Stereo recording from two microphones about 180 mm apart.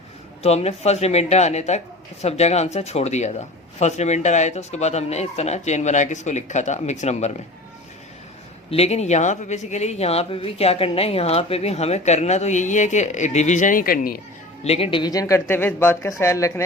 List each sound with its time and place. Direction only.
0.4 s speech: 35° left (ahead or behind)
8.7 s speech: 35° left (ahead or behind); by 14.2 s 55° left (ahead or behind)
14.6 s speech: 35° left (ahead or behind); by 16.6 s 15° left (ahead or behind)